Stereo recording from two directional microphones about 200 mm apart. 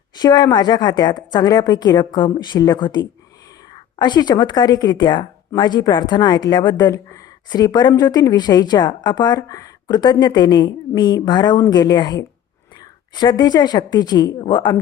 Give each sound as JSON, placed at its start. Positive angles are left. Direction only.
{"t": 0.2, "sound": "a woman's voice", "side_deg": 20}